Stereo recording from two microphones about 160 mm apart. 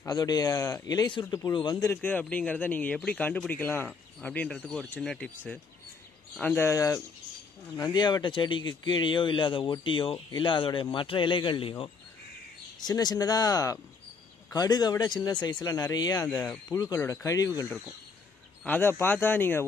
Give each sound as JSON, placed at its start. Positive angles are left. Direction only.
{"t": 0.0, "sound": "speech", "side_deg": 25}
{"t": 1.9, "sound": "speech", "side_deg": 10}
{"t": 6.3, "sound": "speech", "side_deg": 10}